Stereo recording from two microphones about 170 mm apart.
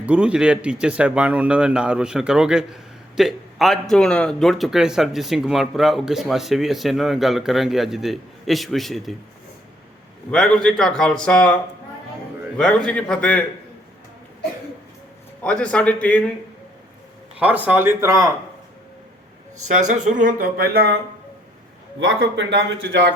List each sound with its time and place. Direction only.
0.0 s speech: 5° right (ahead or behind)
10.3 s speech: 5° left (ahead or behind)
12.5 s a man's voice: 5° left (ahead or behind)
15.4 s a man's voice: 5° left (ahead or behind)
17.4 s speech: 10° right (ahead or behind)
19.9 s speech: 50° right (ahead or behind); by 21.0 s 65° right (ahead or behind)
22.0 s speech: 90° right